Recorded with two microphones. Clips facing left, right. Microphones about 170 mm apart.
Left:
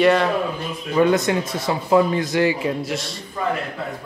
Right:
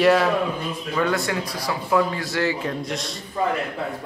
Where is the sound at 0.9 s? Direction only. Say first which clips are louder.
Left 6 dB; 20° left (ahead or behind); by 3.2 s centre (ahead or behind).